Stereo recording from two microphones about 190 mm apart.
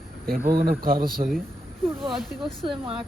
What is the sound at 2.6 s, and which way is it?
Speech, 25° right (ahead or behind).